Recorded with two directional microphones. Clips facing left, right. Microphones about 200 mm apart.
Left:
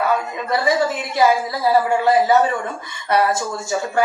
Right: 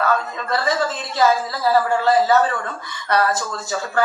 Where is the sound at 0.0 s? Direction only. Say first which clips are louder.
Left 1 dB; 15° left (ahead or behind).